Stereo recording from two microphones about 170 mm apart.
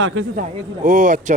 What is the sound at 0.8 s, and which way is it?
Speech, 50° right (ahead or behind).